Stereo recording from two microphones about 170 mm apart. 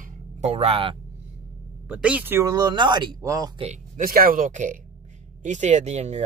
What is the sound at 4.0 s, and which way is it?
Speech, 60° right (ahead or behind).